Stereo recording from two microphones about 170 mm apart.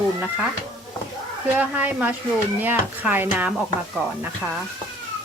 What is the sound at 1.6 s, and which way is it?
Speech, 10° right (ahead or behind).